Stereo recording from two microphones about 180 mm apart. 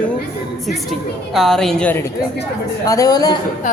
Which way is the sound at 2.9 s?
20° left (ahead or behind).